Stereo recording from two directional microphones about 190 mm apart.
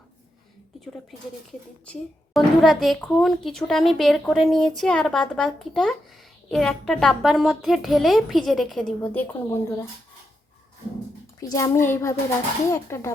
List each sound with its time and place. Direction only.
1.9 s a woman's voice: centre (ahead or behind)
9.5 s a child's voice: 15° left (ahead or behind)
11.3 s a child's voice: 20° left (ahead or behind)